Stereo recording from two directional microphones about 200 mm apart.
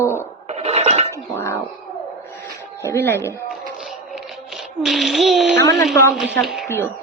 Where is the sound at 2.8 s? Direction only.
15° left (ahead or behind).